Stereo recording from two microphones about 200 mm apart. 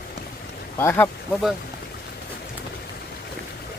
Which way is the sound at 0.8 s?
10° left (ahead or behind).